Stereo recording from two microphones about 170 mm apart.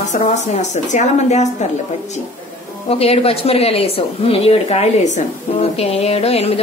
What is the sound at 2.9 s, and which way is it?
A woman's voice, 35° left (ahead or behind).